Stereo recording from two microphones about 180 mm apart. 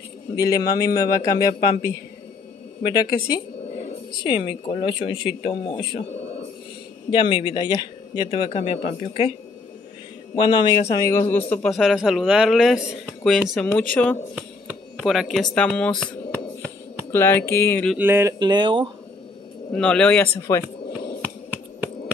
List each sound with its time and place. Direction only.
0.4 s speech: 20° left (ahead or behind)
7.1 s speech: 30° left (ahead or behind)
10.3 s a man's voice: 25° left (ahead or behind); by 14.1 s 5° left (ahead or behind)
14.3 s speech: 5° right (ahead or behind); by 17.9 s 10° left (ahead or behind)
17.9 s speech: 10° right (ahead or behind)
18.4 s speech: 25° right (ahead or behind)
19.7 s speech: 5° left (ahead or behind)